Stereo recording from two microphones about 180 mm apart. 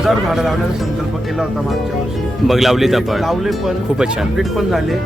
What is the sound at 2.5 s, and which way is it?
Speech, centre (ahead or behind).